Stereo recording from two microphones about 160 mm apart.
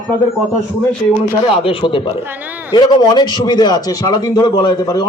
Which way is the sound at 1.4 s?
30° left (ahead or behind).